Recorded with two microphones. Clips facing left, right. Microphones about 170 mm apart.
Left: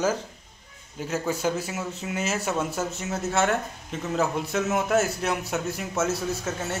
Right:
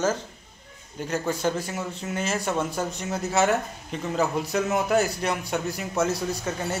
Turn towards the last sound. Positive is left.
turn(degrees=0)  # may be behind; listen again after turning